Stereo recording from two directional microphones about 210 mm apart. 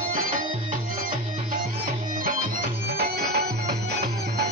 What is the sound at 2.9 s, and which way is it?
Music, 50° right (ahead or behind).